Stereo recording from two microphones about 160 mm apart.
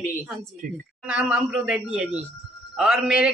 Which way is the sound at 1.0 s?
5° right (ahead or behind).